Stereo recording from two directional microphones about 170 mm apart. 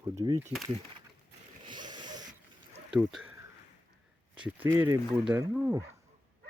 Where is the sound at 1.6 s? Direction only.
25° right (ahead or behind).